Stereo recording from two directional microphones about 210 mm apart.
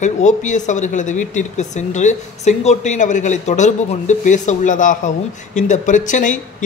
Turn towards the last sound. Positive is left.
turn(degrees=35)  # may be behind; listen again after turning